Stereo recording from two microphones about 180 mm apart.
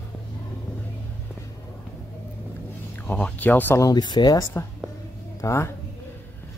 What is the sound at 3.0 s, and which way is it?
Speech, 10° left (ahead or behind).